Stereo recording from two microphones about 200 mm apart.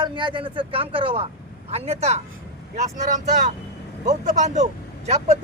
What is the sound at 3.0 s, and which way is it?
Speech, 40° right (ahead or behind).